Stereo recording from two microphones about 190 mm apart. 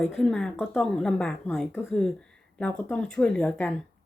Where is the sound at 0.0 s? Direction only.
Centre (ahead or behind).